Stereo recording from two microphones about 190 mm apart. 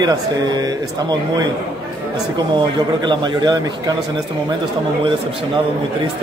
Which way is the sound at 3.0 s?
25° right (ahead or behind).